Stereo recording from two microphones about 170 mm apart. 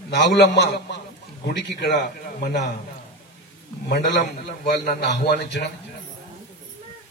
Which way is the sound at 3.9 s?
80° left.